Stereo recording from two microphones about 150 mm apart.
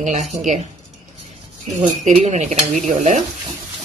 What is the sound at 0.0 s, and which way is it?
Speech, 55° right (ahead or behind).